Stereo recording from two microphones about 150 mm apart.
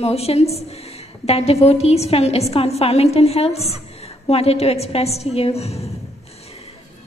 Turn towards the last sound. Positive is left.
turn(degrees=45)  # may be behind; listen again after turning